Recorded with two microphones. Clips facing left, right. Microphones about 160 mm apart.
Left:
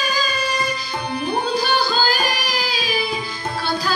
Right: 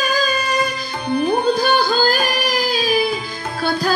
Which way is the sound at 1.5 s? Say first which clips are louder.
Right 4 dB; 50° right (ahead or behind).